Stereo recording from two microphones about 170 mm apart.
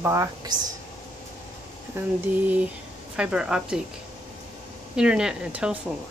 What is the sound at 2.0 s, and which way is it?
Speech, 15° right (ahead or behind).